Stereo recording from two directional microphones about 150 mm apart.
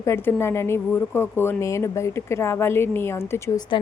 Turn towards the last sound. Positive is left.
turn(degrees=15)  # may be behind; listen again after turning